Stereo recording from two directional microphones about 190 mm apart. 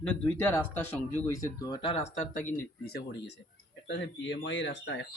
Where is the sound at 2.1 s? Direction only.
40° left (ahead or behind).